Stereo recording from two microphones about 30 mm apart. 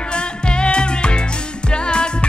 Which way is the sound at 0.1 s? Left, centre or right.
Left.